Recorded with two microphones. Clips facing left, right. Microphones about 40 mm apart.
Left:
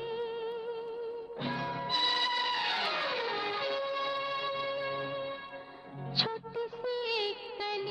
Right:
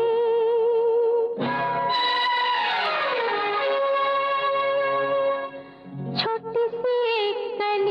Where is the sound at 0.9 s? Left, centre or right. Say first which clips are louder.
Right 18 dB; right.